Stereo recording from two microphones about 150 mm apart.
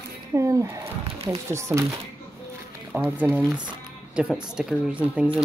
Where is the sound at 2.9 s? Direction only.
15° right (ahead or behind).